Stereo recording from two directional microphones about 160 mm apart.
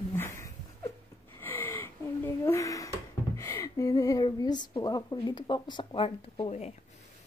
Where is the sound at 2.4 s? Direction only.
20° left (ahead or behind); by 6.7 s 40° left (ahead or behind).